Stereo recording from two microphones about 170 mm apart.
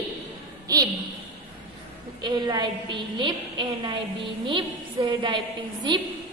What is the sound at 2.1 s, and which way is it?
A woman's voice, 25° right (ahead or behind).